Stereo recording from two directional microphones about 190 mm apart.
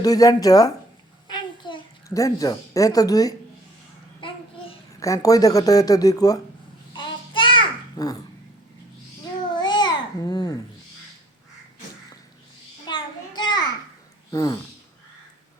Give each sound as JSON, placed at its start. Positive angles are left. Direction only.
{"t": 0.0, "sound": "speech", "side_deg": 20}
{"t": 1.3, "sound": "a sound", "side_deg": 25}
{"t": 4.2, "sound": "babbling", "side_deg": 30}
{"t": 4.9, "sound": "speech", "side_deg": 15}
{"t": 6.9, "sound": "a sound", "side_deg": 25}
{"t": 9.5, "sound": "babbling", "side_deg": 25}
{"t": 12.8, "sound": "child singing", "side_deg": 20}
{"t": 14.3, "sound": "speech", "side_deg": 20}